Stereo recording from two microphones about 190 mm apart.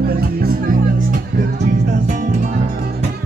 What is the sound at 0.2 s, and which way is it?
Music, 50° right (ahead or behind).